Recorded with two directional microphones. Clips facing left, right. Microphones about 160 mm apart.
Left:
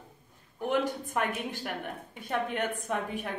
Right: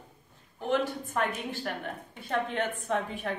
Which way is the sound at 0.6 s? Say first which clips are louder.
Even; 15° left (ahead or behind).